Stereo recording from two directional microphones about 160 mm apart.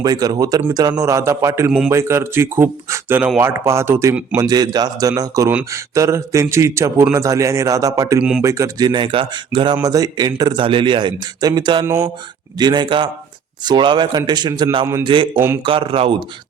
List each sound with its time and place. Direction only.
0.0 s a man's voice: 25° right (ahead or behind)
4.4 s a man's voice: 25° right (ahead or behind)
8.2 s speech: 5° right (ahead or behind)
8.4 s a man's voice: 20° right (ahead or behind)